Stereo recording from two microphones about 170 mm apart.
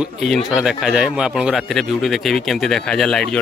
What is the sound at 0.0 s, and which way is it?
Speech, centre (ahead or behind).